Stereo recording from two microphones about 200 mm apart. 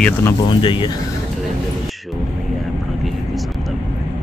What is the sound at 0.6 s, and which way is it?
Speech, 25° left (ahead or behind).